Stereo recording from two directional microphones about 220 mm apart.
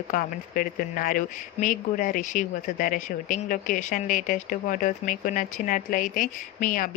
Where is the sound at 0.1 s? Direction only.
40° left (ahead or behind).